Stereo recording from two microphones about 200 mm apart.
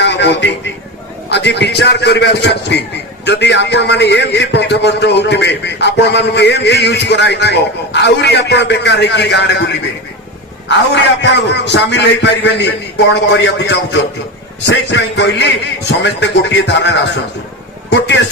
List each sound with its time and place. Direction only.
0.0 s a sound: 60° left (ahead or behind)
1.3 s a man's voice: 60° left (ahead or behind)
10.7 s a man's voice: 60° left (ahead or behind)